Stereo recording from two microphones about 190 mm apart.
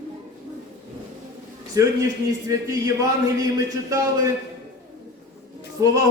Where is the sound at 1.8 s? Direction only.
20° right (ahead or behind).